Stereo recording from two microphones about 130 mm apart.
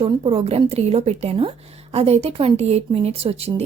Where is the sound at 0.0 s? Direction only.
50° right (ahead or behind).